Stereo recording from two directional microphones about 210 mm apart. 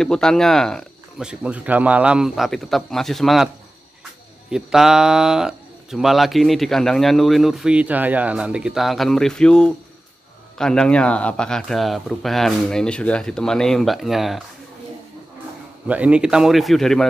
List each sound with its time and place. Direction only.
0.0 s speech: 5° left (ahead or behind)
4.5 s speech: centre (ahead or behind)
15.9 s speech: 5° right (ahead or behind)